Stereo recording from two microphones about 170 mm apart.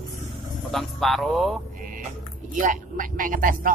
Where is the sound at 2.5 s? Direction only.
50° right (ahead or behind).